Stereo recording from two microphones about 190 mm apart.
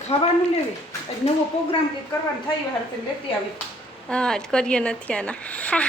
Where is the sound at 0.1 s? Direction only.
35° left (ahead or behind).